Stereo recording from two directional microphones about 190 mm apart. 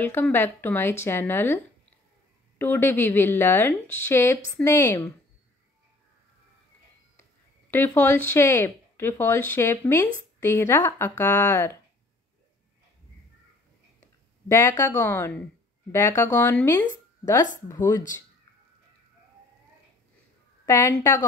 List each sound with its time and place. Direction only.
0.0 s speech: 10° left (ahead or behind)
2.6 s speech: 10° left (ahead or behind)
7.7 s speech: 10° left (ahead or behind)
14.5 s speech: 15° left (ahead or behind)
20.6 s speech: 15° left (ahead or behind)